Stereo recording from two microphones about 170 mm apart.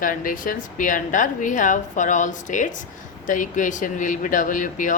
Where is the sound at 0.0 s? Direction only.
55° left (ahead or behind).